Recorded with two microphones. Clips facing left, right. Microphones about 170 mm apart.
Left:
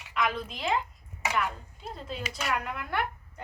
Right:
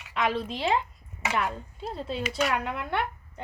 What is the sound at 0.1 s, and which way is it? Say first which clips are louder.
A woman's voice: right 3 dB; 30° right (ahead or behind).